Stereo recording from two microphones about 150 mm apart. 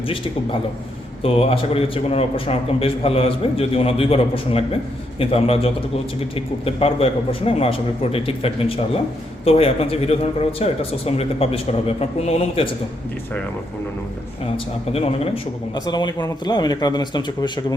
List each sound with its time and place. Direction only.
1.2 s a man's voice: 40° left (ahead or behind)
14.5 s a man's voice: 40° left (ahead or behind)
15.7 s speech: 30° left (ahead or behind)